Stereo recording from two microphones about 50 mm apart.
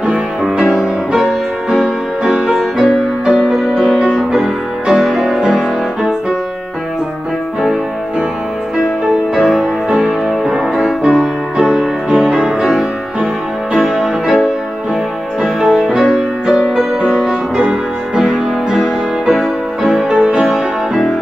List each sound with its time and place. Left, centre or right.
0.4 s music: centre
8.7 s music: centre
12.1 s music: centre
13.7 s music: centre
15.6 s music: centre
18.2 s music: centre